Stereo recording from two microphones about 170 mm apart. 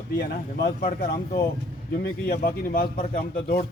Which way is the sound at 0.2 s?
70° left (ahead or behind).